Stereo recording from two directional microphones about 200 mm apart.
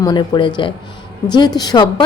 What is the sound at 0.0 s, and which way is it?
A woman's voice, 20° left (ahead or behind).